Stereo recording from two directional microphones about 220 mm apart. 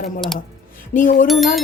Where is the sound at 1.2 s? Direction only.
Centre (ahead or behind).